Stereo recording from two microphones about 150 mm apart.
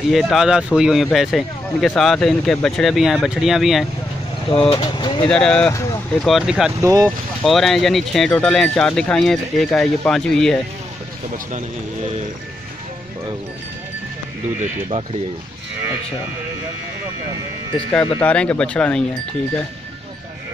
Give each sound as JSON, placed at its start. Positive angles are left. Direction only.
{"t": 0.1, "sound": "speech", "side_deg": 0}
{"t": 4.5, "sound": "speech", "side_deg": 35}
{"t": 5.3, "sound": "speech", "side_deg": 5}
{"t": 6.8, "sound": "speech", "side_deg": -25}
{"t": 7.4, "sound": "speech", "side_deg": 0}
{"t": 18.2, "sound": "speech", "side_deg": 10}